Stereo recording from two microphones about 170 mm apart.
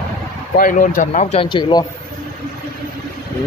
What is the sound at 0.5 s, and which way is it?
Speech, 50° left (ahead or behind).